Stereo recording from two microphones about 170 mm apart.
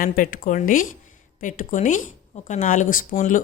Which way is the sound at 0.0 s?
55° left (ahead or behind).